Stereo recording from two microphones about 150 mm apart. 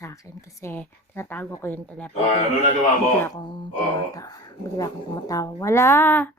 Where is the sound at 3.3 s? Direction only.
30° left (ahead or behind); by 6.3 s 15° left (ahead or behind).